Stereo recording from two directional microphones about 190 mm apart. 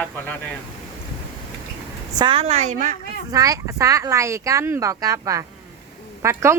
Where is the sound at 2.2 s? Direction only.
30° right (ahead or behind).